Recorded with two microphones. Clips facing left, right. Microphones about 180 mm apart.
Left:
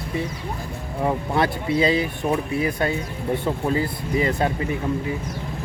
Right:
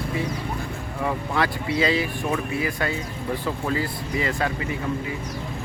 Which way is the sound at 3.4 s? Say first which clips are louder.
Left 3 dB; 25° left (ahead or behind).